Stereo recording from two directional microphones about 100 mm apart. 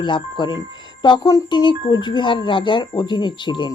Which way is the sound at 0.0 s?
50° left (ahead or behind).